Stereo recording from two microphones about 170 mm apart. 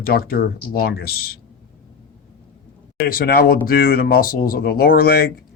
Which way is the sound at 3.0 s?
60° left (ahead or behind).